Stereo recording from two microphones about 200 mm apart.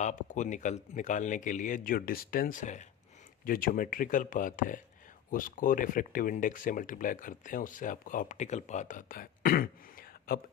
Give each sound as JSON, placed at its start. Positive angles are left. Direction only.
{"t": 0.0, "sound": "speech", "side_deg": 35}